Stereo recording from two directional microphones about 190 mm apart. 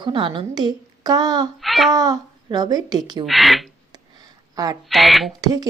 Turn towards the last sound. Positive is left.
turn(degrees=-20)  # may be behind; listen again after turning